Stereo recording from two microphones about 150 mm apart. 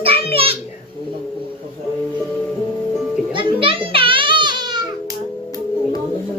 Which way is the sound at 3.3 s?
35° right (ahead or behind).